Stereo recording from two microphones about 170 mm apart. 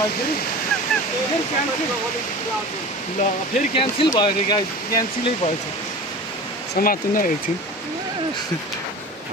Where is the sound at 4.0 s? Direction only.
25° left (ahead or behind).